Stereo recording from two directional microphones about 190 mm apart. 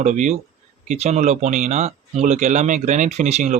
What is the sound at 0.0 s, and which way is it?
Speech, 40° right (ahead or behind).